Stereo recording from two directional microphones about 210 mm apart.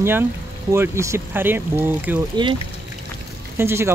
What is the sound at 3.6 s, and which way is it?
Speech, 10° right (ahead or behind).